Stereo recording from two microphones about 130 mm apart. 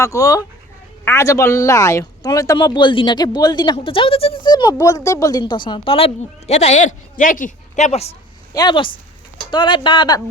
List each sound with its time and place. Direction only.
0.0 s speech: 25° left (ahead or behind)
2.6 s speech: 35° left (ahead or behind)
6.5 s a man's voice: 60° left (ahead or behind)
8.5 s speech: 35° left (ahead or behind)